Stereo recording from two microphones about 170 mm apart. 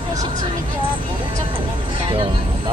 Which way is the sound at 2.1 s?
30° right (ahead or behind).